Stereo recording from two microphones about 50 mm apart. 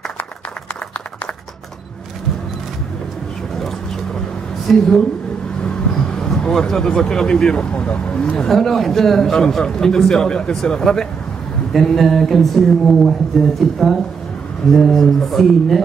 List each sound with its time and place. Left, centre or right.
3.5 s vehicle: centre
4.6 s a man's voice: centre
5.6 s vehicle: centre
6.7 s a man's voice: centre
8.5 s a man's voice: centre